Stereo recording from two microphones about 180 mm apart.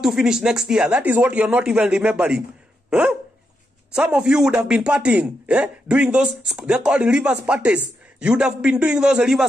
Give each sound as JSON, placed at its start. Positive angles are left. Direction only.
{"t": 0.0, "sound": "a man's voice", "side_deg": -5}
{"t": 2.9, "sound": "dog", "side_deg": -5}
{"t": 3.9, "sound": "a man's voice", "side_deg": -5}